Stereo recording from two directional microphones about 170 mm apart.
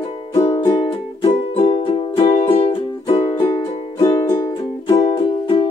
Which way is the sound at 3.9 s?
20° left (ahead or behind).